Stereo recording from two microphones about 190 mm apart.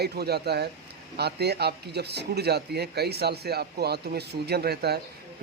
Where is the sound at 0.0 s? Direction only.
55° right (ahead or behind).